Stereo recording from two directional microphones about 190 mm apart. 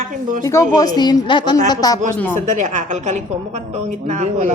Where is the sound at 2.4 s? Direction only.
40° right (ahead or behind).